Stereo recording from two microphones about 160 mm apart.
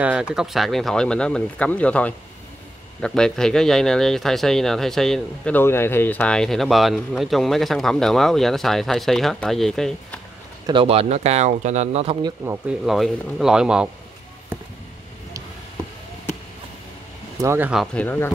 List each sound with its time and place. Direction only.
0.0 s speech: 5° right (ahead or behind)
10.7 s speech: 35° right (ahead or behind)
12.2 s speech: 25° right (ahead or behind)
12.6 s speech: centre (ahead or behind)
17.4 s speech: 15° right (ahead or behind)
17.9 s speech: 10° left (ahead or behind)